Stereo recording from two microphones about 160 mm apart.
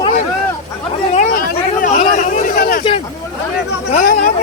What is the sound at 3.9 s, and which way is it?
Speech, 60° left (ahead or behind).